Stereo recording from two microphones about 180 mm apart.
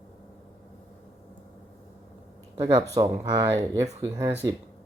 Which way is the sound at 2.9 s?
20° right (ahead or behind).